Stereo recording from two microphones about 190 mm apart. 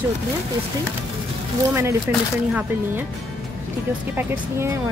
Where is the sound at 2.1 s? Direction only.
10° right (ahead or behind).